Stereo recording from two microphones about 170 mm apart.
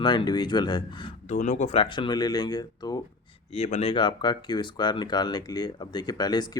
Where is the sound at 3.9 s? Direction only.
30° left (ahead or behind).